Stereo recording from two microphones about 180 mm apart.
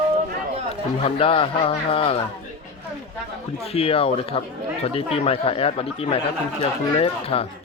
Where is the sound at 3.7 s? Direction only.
30° left (ahead or behind).